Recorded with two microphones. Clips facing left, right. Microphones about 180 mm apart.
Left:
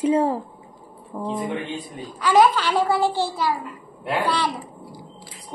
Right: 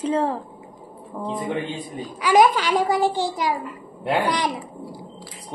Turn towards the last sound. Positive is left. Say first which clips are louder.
# right 1 dB
turn(degrees=-15)  # may be behind; listen again after turning